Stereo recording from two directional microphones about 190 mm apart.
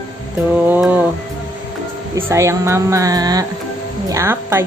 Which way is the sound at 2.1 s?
15° right (ahead or behind).